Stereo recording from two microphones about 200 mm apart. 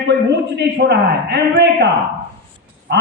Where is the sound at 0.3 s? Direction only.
55° right (ahead or behind).